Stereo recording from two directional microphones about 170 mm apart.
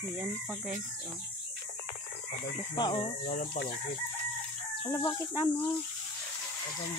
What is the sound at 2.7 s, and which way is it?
Speech, 30° left (ahead or behind).